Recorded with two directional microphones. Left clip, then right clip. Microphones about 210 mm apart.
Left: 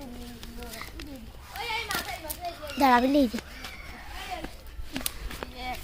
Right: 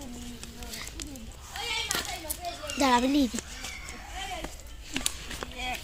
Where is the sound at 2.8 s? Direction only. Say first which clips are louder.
Left 3 dB; 45° left (ahead or behind).